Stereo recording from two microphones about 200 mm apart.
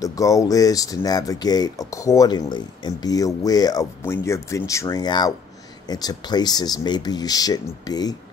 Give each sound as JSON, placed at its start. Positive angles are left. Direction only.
{"t": 0.0, "sound": "speech", "side_deg": 15}